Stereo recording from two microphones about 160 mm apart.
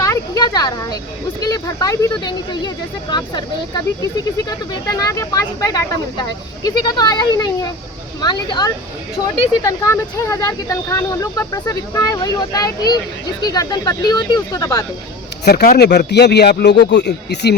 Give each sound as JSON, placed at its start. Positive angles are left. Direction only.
{"t": 0.0, "sound": "a sound", "side_deg": 25}
{"t": 1.4, "sound": "speech", "side_deg": 25}
{"t": 15.4, "sound": "a man's voice", "side_deg": 90}